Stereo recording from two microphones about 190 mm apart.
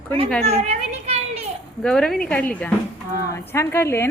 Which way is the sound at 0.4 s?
35° right (ahead or behind).